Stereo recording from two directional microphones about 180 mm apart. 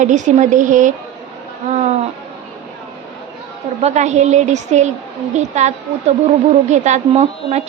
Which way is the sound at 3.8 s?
40° right (ahead or behind).